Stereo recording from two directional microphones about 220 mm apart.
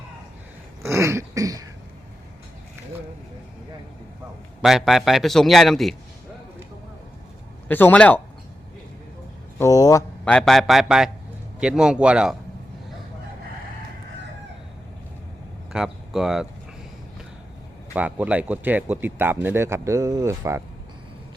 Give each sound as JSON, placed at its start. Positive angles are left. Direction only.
{"t": 0.8, "sound": "throat clearing", "side_deg": -15}
{"t": 4.6, "sound": "a man's voice", "side_deg": 0}
{"t": 7.7, "sound": "speech", "side_deg": 10}
{"t": 9.6, "sound": "speech", "side_deg": 15}
{"t": 10.2, "sound": "a man's voice", "side_deg": 5}
{"t": 15.7, "sound": "speech", "side_deg": 0}
{"t": 17.9, "sound": "speech", "side_deg": -5}